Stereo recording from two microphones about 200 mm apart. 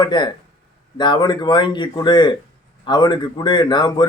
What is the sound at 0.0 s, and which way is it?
A man's voice, 20° left (ahead or behind).